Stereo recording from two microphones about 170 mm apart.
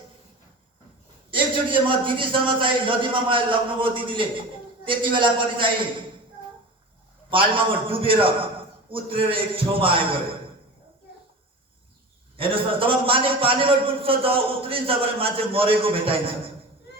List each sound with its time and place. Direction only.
1.3 s a man's voice: 30° right (ahead or behind)
7.3 s a man's voice: 30° right (ahead or behind)
12.4 s a man's voice: 30° right (ahead or behind)